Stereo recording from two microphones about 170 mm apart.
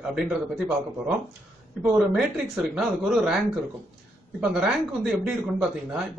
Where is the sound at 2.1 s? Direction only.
5° right (ahead or behind).